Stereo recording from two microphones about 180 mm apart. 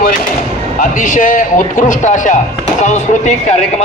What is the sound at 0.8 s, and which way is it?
A man's voice, 45° left (ahead or behind).